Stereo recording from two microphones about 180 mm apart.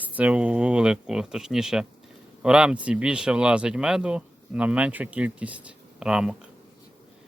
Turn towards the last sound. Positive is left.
turn(degrees=-5)  # may be behind; listen again after turning